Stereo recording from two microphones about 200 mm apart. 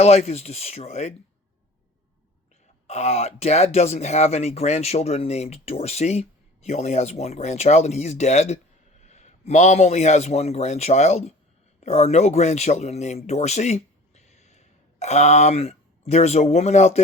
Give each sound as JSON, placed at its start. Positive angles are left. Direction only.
{"t": 0.0, "sound": "speech", "side_deg": 30}
{"t": 2.8, "sound": "speech", "side_deg": 35}